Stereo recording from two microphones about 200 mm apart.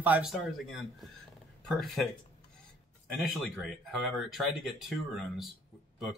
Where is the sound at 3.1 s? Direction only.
Centre (ahead or behind).